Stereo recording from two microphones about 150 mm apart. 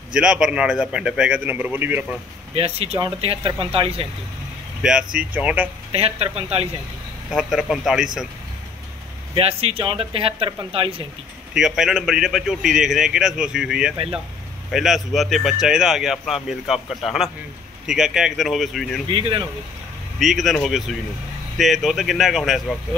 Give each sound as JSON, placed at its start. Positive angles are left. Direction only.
{"t": 0.1, "sound": "a man's voice", "side_deg": -5}
{"t": 2.5, "sound": "speech", "side_deg": -40}
{"t": 4.8, "sound": "a man's voice", "side_deg": -5}
{"t": 5.9, "sound": "speech", "side_deg": -40}
{"t": 7.2, "sound": "speech", "side_deg": 0}
{"t": 9.4, "sound": "speech", "side_deg": -40}
{"t": 11.5, "sound": "speech", "side_deg": -5}
{"t": 19.0, "sound": "speech", "side_deg": -35}
{"t": 20.2, "sound": "speech", "side_deg": 0}